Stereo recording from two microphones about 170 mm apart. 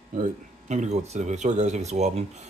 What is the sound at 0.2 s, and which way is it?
Speech, 45° right (ahead or behind).